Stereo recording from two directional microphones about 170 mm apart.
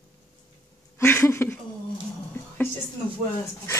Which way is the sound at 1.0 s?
15° left (ahead or behind).